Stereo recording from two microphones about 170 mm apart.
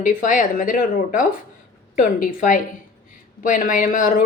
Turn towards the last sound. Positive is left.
turn(degrees=50)  # may be behind; listen again after turning